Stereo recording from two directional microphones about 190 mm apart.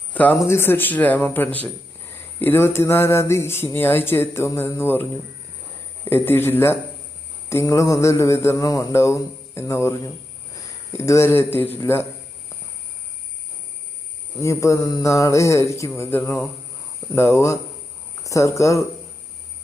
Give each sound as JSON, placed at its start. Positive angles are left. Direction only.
{"t": 0.1, "sound": "speech", "side_deg": 10}
{"t": 6.1, "sound": "speech", "side_deg": 10}
{"t": 10.9, "sound": "speech", "side_deg": 15}
{"t": 14.4, "sound": "speech", "side_deg": 15}